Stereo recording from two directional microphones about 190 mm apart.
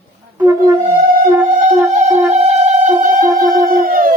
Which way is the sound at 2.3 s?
40° right (ahead or behind).